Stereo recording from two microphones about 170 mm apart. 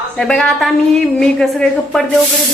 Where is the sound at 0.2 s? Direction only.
5° left (ahead or behind).